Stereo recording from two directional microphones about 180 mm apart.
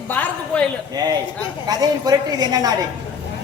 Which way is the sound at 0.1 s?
10° left (ahead or behind).